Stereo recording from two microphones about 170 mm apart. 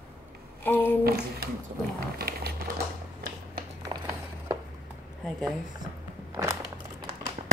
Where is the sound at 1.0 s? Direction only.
65° right (ahead or behind).